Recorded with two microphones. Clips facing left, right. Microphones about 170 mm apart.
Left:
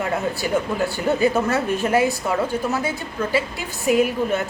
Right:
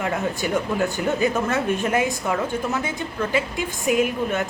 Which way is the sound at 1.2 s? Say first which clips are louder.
Left 3 dB; 35° left (ahead or behind).